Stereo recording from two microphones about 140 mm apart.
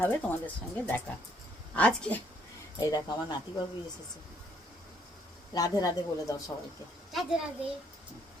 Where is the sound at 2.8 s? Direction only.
25° left (ahead or behind).